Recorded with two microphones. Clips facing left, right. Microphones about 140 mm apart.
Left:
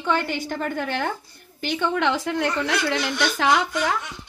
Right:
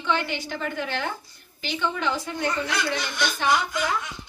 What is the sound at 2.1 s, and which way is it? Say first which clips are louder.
A woman's voice: left 4 dB; 90° left.